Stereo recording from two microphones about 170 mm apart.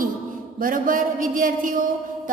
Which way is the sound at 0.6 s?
55° right (ahead or behind).